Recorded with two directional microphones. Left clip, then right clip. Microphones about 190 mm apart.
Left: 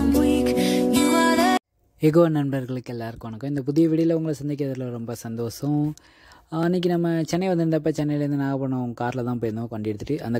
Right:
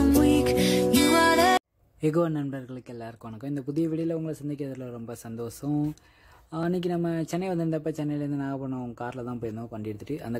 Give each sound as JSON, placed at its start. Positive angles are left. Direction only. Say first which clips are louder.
{"t": 0.0, "sound": "music", "louder": "left 1 dB", "side_deg": 0}
{"t": 2.0, "sound": "speech", "louder": "left 7 dB", "side_deg": 30}